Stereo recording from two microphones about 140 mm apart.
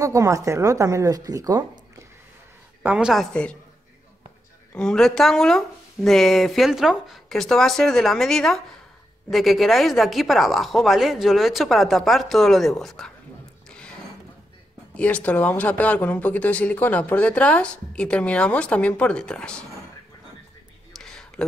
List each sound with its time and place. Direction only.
0.0 s speech: 20° right (ahead or behind)
2.8 s speech: 5° right (ahead or behind)
4.7 s speech: 5° left (ahead or behind)
13.7 s a sound: 5° left (ahead or behind)
15.0 s speech: 10° left (ahead or behind)
20.9 s a sound: 5° left (ahead or behind)